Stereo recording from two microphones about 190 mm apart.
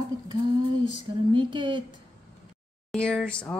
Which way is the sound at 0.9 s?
25° right (ahead or behind).